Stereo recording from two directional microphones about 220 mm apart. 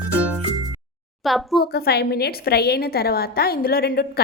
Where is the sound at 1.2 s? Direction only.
Centre (ahead or behind).